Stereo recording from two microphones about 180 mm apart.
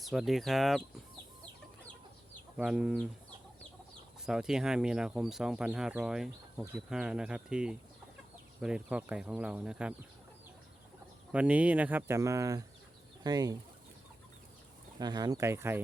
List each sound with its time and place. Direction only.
0.0 s speech: centre (ahead or behind)
2.6 s speech: 5° right (ahead or behind)
4.3 s speech: 5° right (ahead or behind)
11.3 s speech: 5° right (ahead or behind)
14.9 s speech: 20° right (ahead or behind)